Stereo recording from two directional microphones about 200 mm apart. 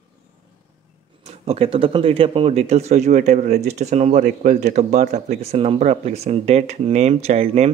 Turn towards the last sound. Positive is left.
turn(degrees=-35)  # may be behind; listen again after turning